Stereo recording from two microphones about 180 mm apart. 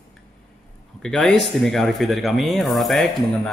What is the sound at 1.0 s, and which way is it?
Speech, centre (ahead or behind).